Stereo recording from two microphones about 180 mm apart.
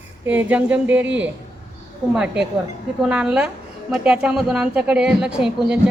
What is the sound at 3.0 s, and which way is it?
A woman's voice, 5° right (ahead or behind).